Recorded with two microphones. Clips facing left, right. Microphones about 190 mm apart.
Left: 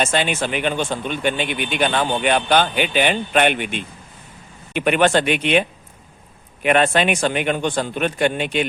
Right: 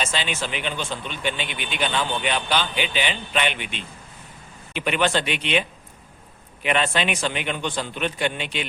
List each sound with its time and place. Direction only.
0.0 s speech: 50° left (ahead or behind)